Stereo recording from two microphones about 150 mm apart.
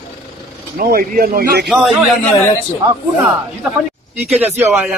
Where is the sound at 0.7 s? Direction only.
75° right (ahead or behind).